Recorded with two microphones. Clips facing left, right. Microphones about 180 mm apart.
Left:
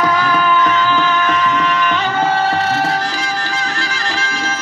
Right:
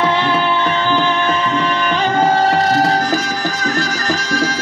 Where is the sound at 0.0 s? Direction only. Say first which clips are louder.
Even; 25° right (ahead or behind).